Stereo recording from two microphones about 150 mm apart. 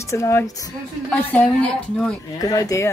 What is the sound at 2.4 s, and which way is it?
Speech, 20° left (ahead or behind).